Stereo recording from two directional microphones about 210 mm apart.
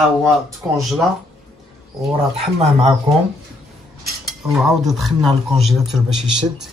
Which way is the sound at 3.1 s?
30° right (ahead or behind).